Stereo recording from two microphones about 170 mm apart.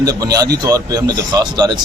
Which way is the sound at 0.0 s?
20° right (ahead or behind).